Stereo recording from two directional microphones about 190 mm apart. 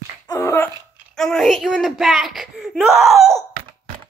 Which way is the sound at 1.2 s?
Centre (ahead or behind).